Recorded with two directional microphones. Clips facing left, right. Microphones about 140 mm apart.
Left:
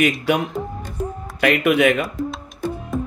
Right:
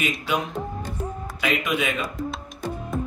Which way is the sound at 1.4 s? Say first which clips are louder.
Left 9 dB; 65° left (ahead or behind).